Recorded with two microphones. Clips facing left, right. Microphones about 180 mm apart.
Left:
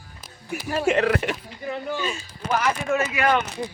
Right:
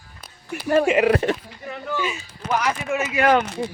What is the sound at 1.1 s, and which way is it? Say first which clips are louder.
Speech: right 4 dB; 30° right (ahead or behind).